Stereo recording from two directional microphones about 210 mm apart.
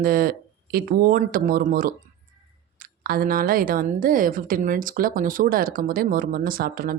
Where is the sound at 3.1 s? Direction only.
45° right (ahead or behind).